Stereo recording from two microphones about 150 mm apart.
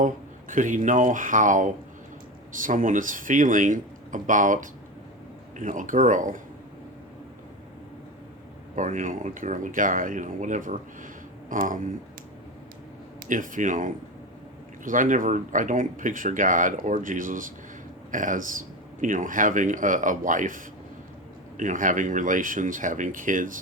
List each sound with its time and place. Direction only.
0.0 s speech: 60° right (ahead or behind)
8.7 s speech: 60° right (ahead or behind)
13.2 s speech: 60° right (ahead or behind)
21.6 s speech: 60° right (ahead or behind)